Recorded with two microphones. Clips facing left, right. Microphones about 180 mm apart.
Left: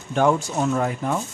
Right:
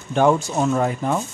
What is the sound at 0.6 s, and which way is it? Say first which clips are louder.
Speech: right 2 dB; 35° right (ahead or behind).